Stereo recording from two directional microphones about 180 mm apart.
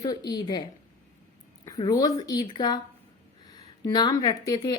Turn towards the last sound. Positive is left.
turn(degrees=20)  # may be behind; listen again after turning